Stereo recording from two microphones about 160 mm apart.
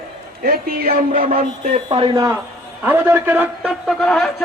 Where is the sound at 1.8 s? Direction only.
30° right (ahead or behind).